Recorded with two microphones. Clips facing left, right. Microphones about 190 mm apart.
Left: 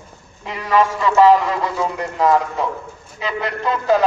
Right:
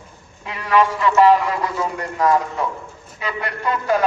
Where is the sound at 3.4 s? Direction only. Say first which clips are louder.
Left 1 dB; 25° left (ahead or behind).